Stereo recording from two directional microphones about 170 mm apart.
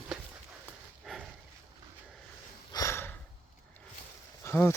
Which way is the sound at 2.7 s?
15° left (ahead or behind).